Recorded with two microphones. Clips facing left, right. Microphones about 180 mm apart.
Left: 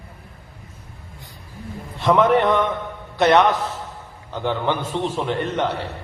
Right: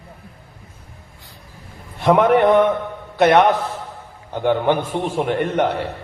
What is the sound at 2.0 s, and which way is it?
Speech, 50° right (ahead or behind).